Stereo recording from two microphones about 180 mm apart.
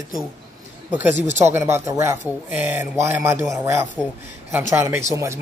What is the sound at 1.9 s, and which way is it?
Speech, 15° right (ahead or behind).